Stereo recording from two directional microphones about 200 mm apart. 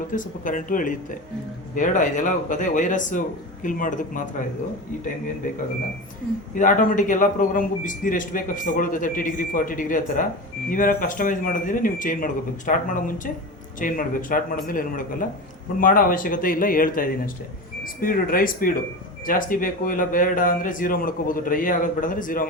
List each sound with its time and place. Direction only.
0.1 s a man's voice: 40° left (ahead or behind)
6.5 s a man's voice: 40° left (ahead or behind)